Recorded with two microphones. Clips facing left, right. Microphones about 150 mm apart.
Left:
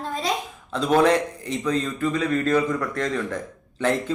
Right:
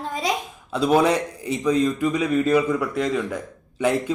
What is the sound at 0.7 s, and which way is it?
A man's voice, 10° right (ahead or behind).